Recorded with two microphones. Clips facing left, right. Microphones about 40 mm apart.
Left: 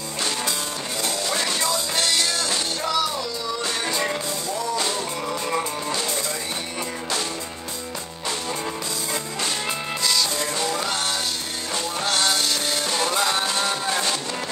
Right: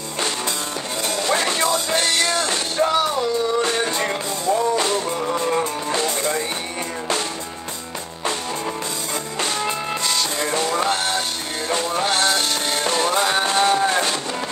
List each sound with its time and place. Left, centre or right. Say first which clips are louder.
1.0 s music: right 5 dB; right
10.7 s music: right 5 dB; right